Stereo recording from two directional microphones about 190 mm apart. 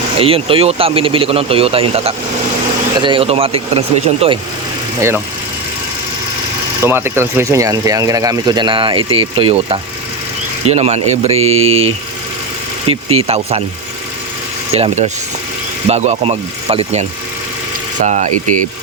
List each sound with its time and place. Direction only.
0.2 s speech: 30° right (ahead or behind)
6.8 s speech: 10° right (ahead or behind); by 11.9 s 30° right (ahead or behind)
12.9 s speech: 30° right (ahead or behind)
14.7 s speech: 35° right (ahead or behind)